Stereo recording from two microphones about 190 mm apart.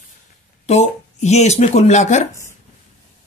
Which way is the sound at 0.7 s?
35° left (ahead or behind).